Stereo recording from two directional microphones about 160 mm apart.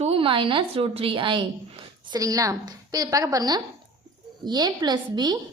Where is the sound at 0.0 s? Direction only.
35° right (ahead or behind).